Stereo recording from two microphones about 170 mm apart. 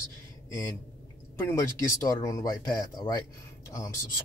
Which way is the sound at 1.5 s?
20° left (ahead or behind).